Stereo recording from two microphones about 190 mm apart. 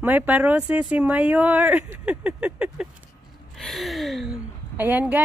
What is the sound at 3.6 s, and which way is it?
Speech, centre (ahead or behind).